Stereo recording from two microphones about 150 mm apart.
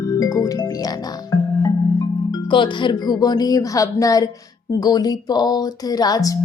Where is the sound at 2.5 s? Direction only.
30° left (ahead or behind).